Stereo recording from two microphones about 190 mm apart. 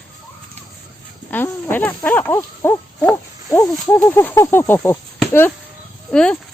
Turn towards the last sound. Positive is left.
turn(degrees=5)  # may be behind; listen again after turning